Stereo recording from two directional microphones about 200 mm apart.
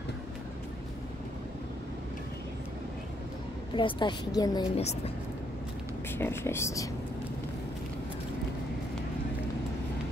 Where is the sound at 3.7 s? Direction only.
25° left (ahead or behind).